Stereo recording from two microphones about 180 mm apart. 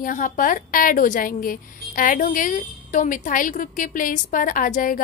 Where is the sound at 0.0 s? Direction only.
50° left (ahead or behind).